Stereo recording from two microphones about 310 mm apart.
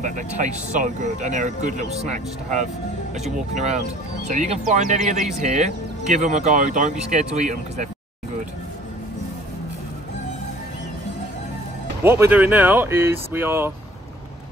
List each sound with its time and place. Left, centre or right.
0.0 s speech: right
12.0 s speech: centre